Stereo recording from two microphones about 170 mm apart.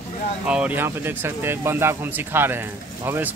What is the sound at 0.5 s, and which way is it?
Speech, 5° right (ahead or behind).